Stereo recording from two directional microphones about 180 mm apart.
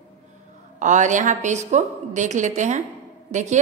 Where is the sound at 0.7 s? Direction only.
45° right (ahead or behind).